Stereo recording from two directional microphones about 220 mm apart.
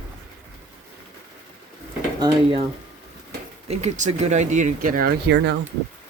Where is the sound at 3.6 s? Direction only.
30° right (ahead or behind); by 5.5 s 45° right (ahead or behind).